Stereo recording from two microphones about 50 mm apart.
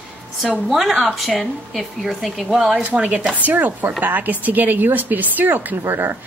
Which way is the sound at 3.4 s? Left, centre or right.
Right.